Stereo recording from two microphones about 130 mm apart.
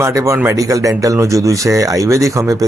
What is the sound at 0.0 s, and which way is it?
Speech, 25° right (ahead or behind).